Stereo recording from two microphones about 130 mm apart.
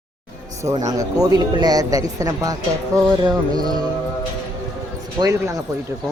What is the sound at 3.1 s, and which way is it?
Music, 30° right (ahead or behind).